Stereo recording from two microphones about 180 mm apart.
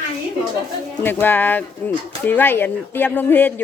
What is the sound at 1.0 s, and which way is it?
A woman's voice, 10° left (ahead or behind).